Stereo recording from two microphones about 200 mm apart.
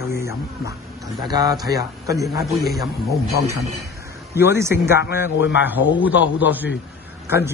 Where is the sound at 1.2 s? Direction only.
20° right (ahead or behind).